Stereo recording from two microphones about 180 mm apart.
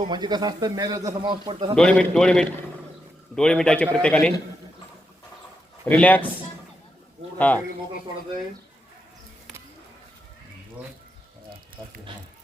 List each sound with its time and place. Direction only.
0.1 s a man's voice: 25° right (ahead or behind)
1.7 s a man's voice: 5° left (ahead or behind)
5.8 s a man's voice: 10° left (ahead or behind)
7.3 s a man's voice: 10° left (ahead or behind)